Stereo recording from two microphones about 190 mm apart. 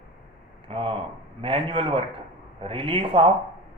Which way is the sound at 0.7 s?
30° right (ahead or behind).